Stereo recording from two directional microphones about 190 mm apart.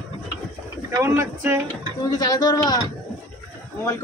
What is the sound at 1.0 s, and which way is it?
Speech, 15° right (ahead or behind).